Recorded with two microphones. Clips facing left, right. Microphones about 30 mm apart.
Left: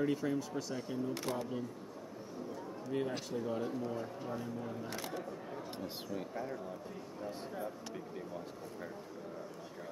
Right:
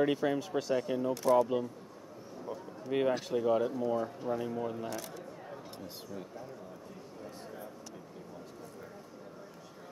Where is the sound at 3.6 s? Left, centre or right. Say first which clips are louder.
Right 6 dB; centre.